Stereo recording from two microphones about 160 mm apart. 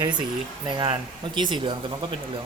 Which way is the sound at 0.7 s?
30° right (ahead or behind).